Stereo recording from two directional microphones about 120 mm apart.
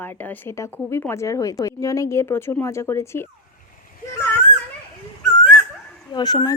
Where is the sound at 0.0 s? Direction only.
15° left (ahead or behind).